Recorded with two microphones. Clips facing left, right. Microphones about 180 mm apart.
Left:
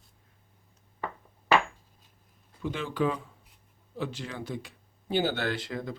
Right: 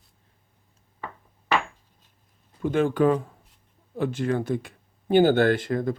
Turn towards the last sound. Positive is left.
turn(degrees=-50)  # may be behind; listen again after turning